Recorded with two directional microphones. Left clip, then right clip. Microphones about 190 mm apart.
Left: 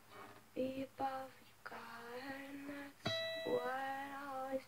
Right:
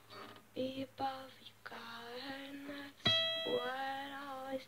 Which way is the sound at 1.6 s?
Centre (ahead or behind).